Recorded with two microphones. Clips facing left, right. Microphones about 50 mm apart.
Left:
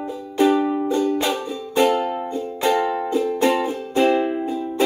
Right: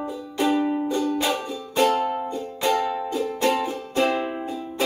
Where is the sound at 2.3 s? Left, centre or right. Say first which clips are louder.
Left 6 dB; centre.